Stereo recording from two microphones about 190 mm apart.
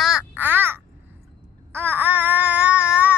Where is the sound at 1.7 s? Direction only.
10° right (ahead or behind).